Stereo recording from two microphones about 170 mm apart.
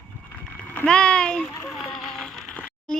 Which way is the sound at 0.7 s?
5° left (ahead or behind).